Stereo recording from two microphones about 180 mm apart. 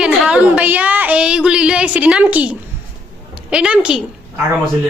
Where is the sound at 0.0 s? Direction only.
5° right (ahead or behind).